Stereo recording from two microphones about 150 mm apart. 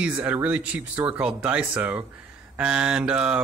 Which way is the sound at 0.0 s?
10° right (ahead or behind).